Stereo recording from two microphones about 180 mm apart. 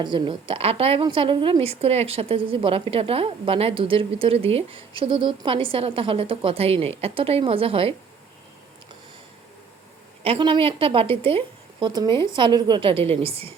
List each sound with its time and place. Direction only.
0.0 s a woman's voice: 25° right (ahead or behind)
10.2 s a woman's voice: 30° right (ahead or behind)